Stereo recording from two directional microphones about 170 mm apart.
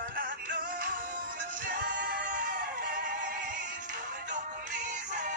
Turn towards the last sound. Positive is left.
turn(degrees=-45)  # may be behind; listen again after turning